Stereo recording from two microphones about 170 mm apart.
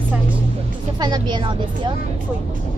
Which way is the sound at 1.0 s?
25° right (ahead or behind).